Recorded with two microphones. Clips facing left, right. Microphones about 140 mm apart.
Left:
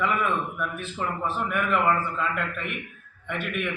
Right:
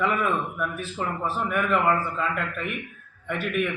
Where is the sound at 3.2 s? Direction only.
40° right (ahead or behind).